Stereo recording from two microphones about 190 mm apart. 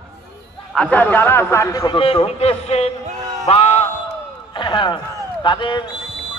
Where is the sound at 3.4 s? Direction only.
30° left (ahead or behind).